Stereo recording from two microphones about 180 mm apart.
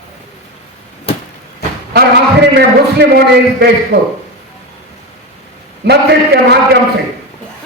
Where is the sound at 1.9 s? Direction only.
65° right (ahead or behind).